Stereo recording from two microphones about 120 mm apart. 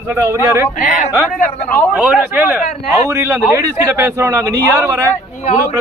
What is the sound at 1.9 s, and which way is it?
Speech, 10° right (ahead or behind).